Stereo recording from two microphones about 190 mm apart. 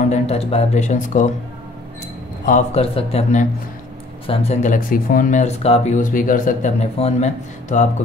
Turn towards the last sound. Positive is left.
turn(degrees=40)  # may be behind; listen again after turning